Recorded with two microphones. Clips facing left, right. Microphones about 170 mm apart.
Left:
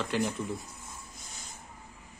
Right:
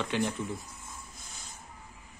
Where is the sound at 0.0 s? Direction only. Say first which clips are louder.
Even; centre (ahead or behind).